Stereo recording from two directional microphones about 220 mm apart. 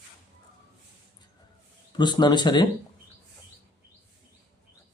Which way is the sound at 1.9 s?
20° left (ahead or behind).